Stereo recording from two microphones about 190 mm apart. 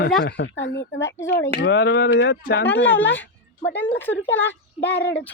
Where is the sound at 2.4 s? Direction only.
50° left (ahead or behind).